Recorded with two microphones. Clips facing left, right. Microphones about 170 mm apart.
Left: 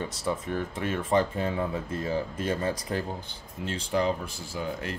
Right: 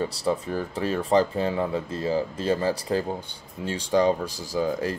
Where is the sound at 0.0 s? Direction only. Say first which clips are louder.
Right 5 dB; 35° right (ahead or behind).